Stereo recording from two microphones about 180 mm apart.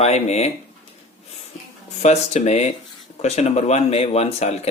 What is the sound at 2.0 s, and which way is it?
Speech, 40° left (ahead or behind).